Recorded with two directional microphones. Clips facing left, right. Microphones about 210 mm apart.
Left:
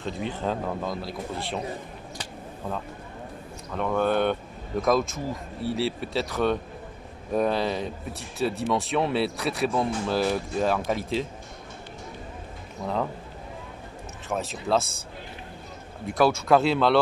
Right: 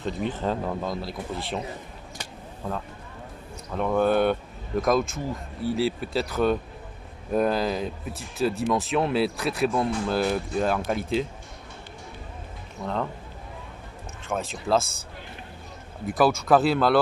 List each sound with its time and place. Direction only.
0.0 s speech: centre (ahead or behind)
3.7 s speech: 10° right (ahead or behind)
12.8 s speech: 5° left (ahead or behind)
14.3 s speech: centre (ahead or behind)
16.1 s speech: centre (ahead or behind)